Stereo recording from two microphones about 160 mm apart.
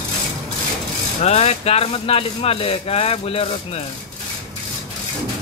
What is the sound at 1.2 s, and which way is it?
Speech, 40° left (ahead or behind).